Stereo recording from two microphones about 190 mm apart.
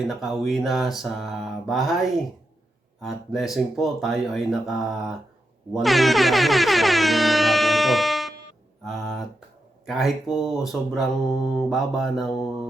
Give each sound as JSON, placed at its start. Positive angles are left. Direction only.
{"t": 0.1, "sound": "speech", "side_deg": 0}
{"t": 5.7, "sound": "air horn", "side_deg": 0}
{"t": 8.8, "sound": "speech", "side_deg": 0}